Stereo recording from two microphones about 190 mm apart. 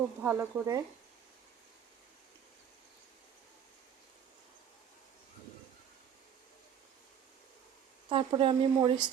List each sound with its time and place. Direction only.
0.2 s speech: 10° right (ahead or behind)
8.1 s speech: 25° right (ahead or behind)